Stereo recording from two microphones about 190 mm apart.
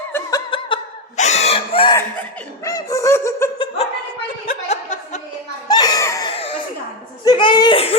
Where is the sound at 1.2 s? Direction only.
35° left (ahead or behind).